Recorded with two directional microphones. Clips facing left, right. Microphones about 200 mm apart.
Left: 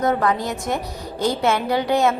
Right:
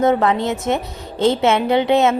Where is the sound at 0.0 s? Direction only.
25° right (ahead or behind).